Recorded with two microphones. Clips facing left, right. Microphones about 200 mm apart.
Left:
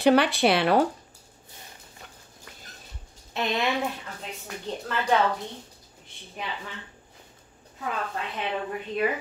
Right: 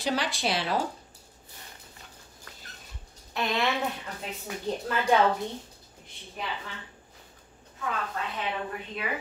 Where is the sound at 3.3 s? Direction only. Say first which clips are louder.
Left 1 dB; 20° left (ahead or behind).